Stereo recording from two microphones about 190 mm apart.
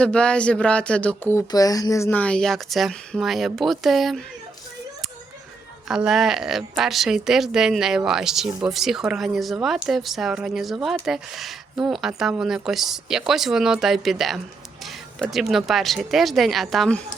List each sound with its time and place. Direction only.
0.0 s a woman's voice: 5° left (ahead or behind)
5.9 s a woman's voice: centre (ahead or behind)